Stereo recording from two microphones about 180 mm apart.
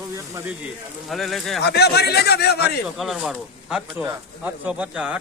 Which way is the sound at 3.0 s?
Centre (ahead or behind).